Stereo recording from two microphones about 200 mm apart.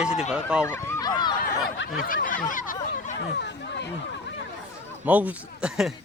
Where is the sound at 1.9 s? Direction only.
45° left (ahead or behind).